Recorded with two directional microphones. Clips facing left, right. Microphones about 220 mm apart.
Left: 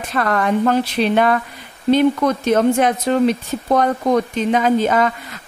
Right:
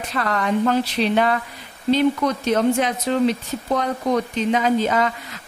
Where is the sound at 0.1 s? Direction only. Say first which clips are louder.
Left 4 dB; 50° left (ahead or behind).